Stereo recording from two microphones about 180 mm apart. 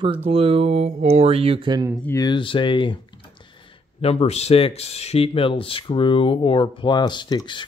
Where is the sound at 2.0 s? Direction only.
20° left (ahead or behind).